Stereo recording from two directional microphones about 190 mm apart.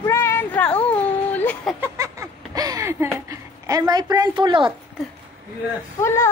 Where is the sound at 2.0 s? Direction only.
15° right (ahead or behind).